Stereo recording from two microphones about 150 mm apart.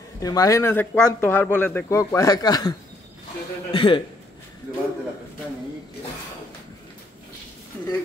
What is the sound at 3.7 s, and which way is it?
Speech, 35° left (ahead or behind).